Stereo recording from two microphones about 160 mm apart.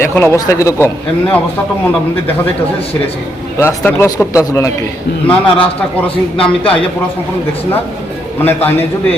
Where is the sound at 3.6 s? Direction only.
15° left (ahead or behind).